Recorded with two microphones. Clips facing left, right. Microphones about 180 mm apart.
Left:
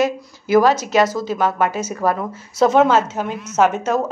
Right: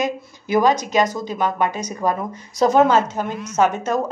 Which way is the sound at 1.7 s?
5° left (ahead or behind).